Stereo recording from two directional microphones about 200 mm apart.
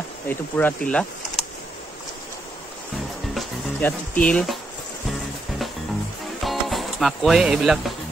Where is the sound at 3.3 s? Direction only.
10° left (ahead or behind).